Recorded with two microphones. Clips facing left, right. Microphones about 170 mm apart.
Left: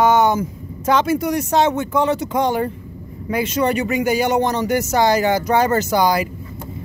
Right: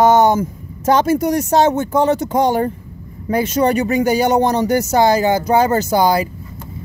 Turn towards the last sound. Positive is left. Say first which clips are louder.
# right 2 dB
turn(degrees=-30)  # may be behind; listen again after turning